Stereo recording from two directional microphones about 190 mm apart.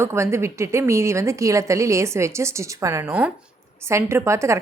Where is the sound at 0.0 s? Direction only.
15° right (ahead or behind).